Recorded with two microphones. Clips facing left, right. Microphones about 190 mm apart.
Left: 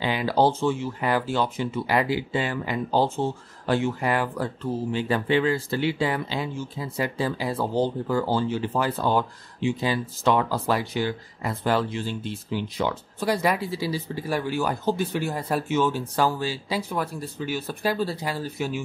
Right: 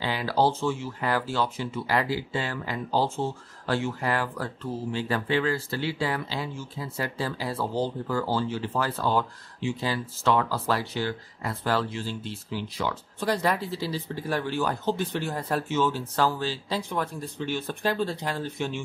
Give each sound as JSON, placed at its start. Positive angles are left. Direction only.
{"t": 0.0, "sound": "speech", "side_deg": 20}